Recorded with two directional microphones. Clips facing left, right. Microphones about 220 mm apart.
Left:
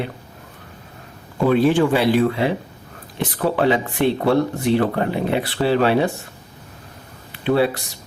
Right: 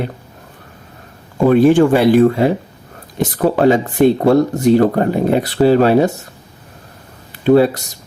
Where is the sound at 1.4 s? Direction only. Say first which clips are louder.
Right 6 dB; 50° right (ahead or behind).